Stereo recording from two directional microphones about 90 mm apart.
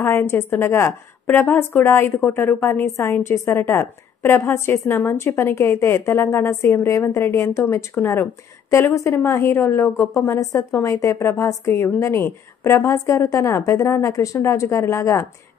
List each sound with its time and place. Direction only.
0.0 s a woman's voice: 25° left (ahead or behind)